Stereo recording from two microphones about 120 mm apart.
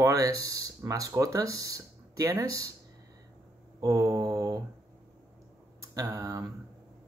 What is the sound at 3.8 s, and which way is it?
Speech, 30° right (ahead or behind).